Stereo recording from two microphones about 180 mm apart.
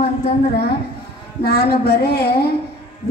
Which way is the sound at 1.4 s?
60° left (ahead or behind).